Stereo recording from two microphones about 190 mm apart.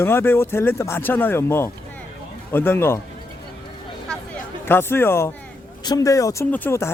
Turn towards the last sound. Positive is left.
turn(degrees=10)  # may be behind; listen again after turning